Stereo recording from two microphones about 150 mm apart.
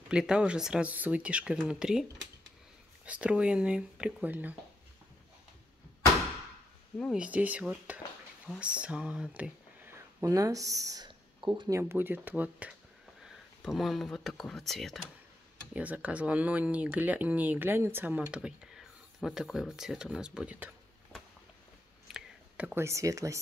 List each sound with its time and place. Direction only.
0.1 s speech: 5° right (ahead or behind)
3.1 s speech: 10° right (ahead or behind)
7.2 s speech: 10° right (ahead or behind); by 11.8 s 25° right (ahead or behind)
11.8 s speech: 15° right (ahead or behind)
15.7 s speech: 10° right (ahead or behind)
22.0 s a sound: 5° right (ahead or behind)
22.8 s speech: 20° right (ahead or behind)